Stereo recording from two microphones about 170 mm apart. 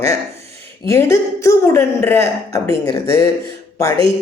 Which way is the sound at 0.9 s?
15° left (ahead or behind).